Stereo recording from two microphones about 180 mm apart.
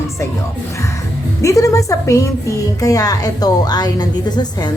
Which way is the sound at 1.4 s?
20° left (ahead or behind).